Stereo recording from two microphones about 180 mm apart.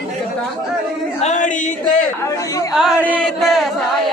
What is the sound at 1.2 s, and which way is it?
Choir, 40° left (ahead or behind).